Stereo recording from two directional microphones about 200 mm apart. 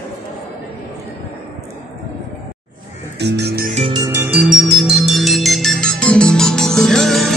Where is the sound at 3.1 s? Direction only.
55° right (ahead or behind).